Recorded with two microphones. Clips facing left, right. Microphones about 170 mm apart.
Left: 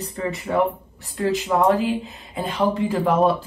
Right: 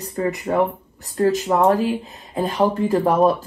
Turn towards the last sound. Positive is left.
turn(degrees=-40)  # may be behind; listen again after turning